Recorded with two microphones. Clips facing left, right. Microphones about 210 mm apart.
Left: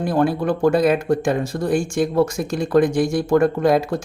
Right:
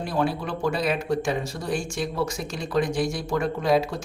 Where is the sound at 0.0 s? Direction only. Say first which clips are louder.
Left 7 dB; 50° left (ahead or behind).